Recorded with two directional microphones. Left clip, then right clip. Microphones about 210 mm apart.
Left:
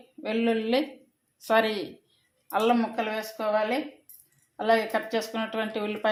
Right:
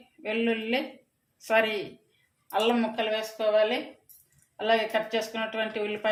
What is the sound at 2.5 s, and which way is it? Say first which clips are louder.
Speech: left 1 dB; 30° left (ahead or behind).